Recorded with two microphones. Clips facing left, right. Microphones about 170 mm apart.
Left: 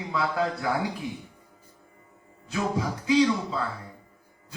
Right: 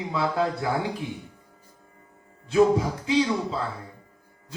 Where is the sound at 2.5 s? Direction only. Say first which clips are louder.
Right 8 dB; 30° right (ahead or behind).